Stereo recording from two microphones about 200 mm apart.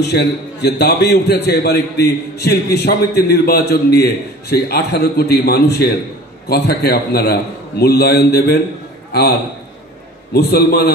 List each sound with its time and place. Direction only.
0.0 s a man's voice: 55° left (ahead or behind)
10.3 s a man's voice: 55° left (ahead or behind)